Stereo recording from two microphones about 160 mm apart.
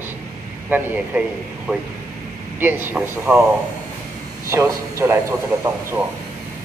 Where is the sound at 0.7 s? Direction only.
10° right (ahead or behind).